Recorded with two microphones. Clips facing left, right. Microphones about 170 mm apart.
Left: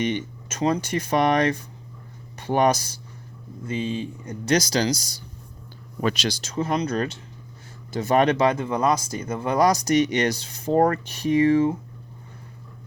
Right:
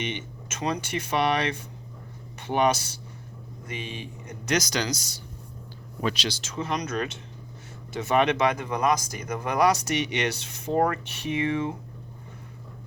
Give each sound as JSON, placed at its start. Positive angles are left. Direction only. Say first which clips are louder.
{"t": 0.0, "sound": "speech", "louder": "left 7 dB", "side_deg": 35}
{"t": 3.7, "sound": "speech", "louder": "left 9 dB", "side_deg": 30}
{"t": 6.0, "sound": "speech", "louder": "left 4 dB", "side_deg": 50}